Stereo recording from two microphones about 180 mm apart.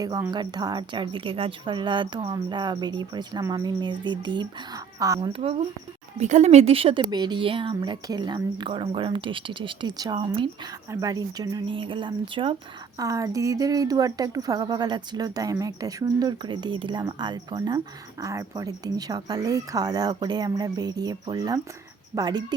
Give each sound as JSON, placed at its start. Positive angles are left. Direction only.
{"t": 0.0, "sound": "speech", "side_deg": -20}
{"t": 5.3, "sound": "speech", "side_deg": -30}